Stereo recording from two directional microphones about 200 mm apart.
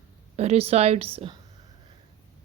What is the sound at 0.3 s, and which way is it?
A woman's voice, 30° right (ahead or behind).